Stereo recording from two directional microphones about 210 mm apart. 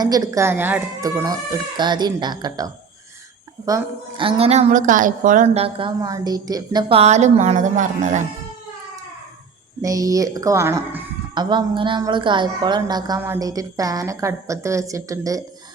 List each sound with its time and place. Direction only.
0.0 s a woman's voice: 15° right (ahead or behind)
4.2 s a woman's voice: 25° right (ahead or behind)
9.8 s a woman's voice: 15° right (ahead or behind)